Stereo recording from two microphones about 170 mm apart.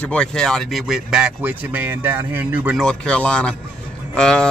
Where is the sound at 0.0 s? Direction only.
5° left (ahead or behind); by 2.8 s 10° right (ahead or behind).